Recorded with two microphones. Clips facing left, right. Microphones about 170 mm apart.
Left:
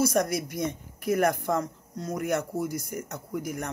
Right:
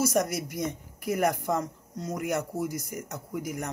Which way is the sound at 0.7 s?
15° right (ahead or behind).